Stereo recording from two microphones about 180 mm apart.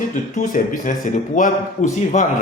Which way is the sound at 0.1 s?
45° left (ahead or behind).